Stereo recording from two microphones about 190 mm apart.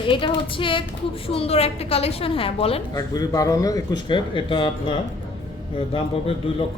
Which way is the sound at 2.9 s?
20° left (ahead or behind).